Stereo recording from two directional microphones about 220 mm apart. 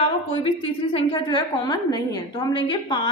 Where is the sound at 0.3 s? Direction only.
25° left (ahead or behind).